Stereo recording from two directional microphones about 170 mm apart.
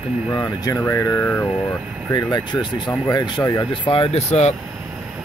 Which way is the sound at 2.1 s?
25° left (ahead or behind).